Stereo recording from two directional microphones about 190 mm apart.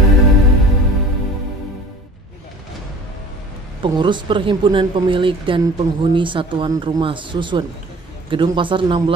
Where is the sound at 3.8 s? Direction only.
25° right (ahead or behind).